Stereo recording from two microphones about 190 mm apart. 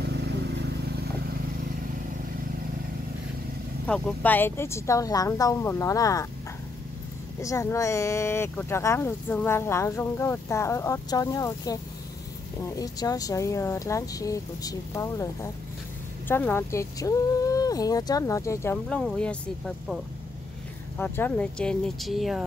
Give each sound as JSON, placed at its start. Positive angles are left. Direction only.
{"t": 0.0, "sound": "vehicle", "side_deg": -60}
{"t": 3.8, "sound": "speech", "side_deg": 5}
{"t": 7.4, "sound": "speech", "side_deg": 15}
{"t": 21.0, "sound": "speech", "side_deg": 10}